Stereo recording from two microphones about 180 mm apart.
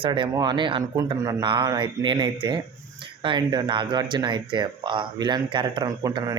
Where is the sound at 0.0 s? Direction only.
25° right (ahead or behind).